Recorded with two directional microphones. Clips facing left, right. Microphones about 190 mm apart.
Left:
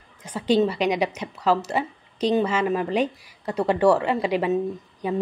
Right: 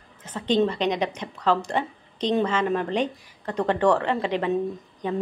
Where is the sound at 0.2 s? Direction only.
10° left (ahead or behind).